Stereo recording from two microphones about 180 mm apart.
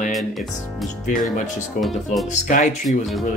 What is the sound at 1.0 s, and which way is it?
Speech, 45° left (ahead or behind).